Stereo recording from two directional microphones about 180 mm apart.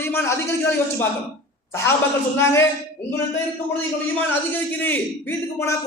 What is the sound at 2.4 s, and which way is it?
Speech, 15° left (ahead or behind).